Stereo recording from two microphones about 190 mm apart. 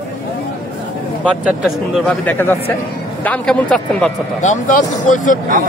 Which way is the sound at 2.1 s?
10° left (ahead or behind).